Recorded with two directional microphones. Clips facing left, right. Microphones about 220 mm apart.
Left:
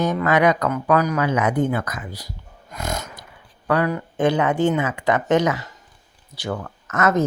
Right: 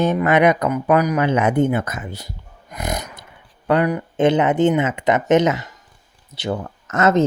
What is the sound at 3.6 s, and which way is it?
Speech, 20° right (ahead or behind).